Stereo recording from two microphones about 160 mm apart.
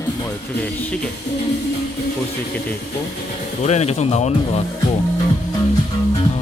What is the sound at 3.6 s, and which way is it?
Speech, 45° left (ahead or behind).